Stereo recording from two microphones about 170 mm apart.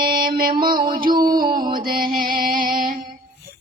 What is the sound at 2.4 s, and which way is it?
Music, 55° right (ahead or behind).